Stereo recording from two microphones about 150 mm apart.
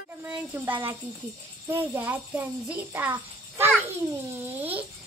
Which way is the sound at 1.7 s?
15° right (ahead or behind).